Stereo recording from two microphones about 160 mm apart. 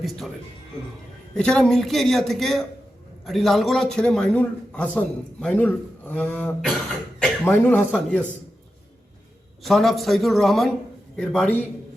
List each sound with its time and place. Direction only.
0.0 s a man's voice: centre (ahead or behind)
1.4 s a man's voice: 5° left (ahead or behind)
9.6 s a man's voice: centre (ahead or behind)